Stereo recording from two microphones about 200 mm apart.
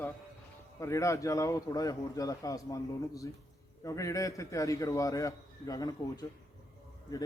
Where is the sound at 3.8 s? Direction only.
15° left (ahead or behind).